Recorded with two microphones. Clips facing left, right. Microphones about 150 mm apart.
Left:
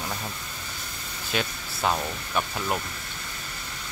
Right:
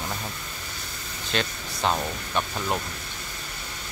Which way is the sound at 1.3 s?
5° left (ahead or behind).